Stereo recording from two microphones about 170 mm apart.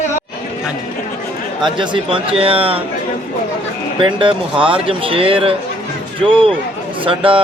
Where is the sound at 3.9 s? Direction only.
30° right (ahead or behind).